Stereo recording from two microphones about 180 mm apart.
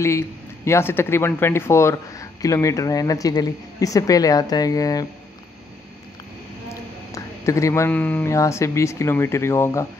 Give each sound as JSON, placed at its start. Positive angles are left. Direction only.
{"t": 0.7, "sound": "speech", "side_deg": 15}
{"t": 7.1, "sound": "speech", "side_deg": 15}